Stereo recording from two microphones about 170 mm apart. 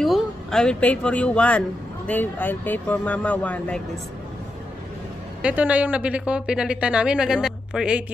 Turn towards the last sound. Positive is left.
turn(degrees=-5)  # may be behind; listen again after turning